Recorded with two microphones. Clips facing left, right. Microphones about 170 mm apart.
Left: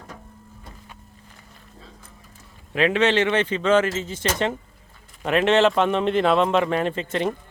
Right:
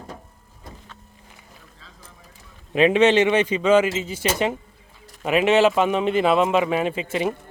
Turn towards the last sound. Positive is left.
turn(degrees=-5)  # may be behind; listen again after turning